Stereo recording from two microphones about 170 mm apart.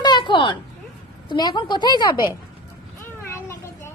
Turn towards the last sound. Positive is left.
turn(degrees=15)  # may be behind; listen again after turning